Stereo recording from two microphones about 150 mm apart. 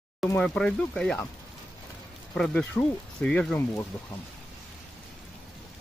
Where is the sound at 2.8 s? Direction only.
20° left (ahead or behind).